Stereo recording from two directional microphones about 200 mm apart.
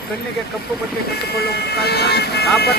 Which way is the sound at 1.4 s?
55° left (ahead or behind).